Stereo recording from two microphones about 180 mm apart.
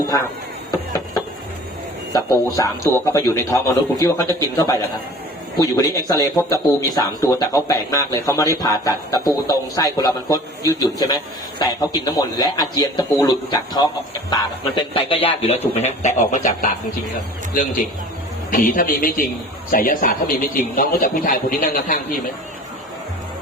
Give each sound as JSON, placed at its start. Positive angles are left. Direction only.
{"t": 2.1, "sound": "a man's voice", "side_deg": 15}